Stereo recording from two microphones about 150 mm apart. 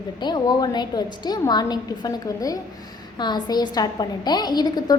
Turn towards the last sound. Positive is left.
turn(degrees=25)  # may be behind; listen again after turning